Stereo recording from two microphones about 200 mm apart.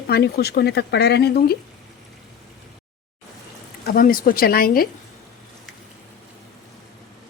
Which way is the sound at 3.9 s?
45° left (ahead or behind).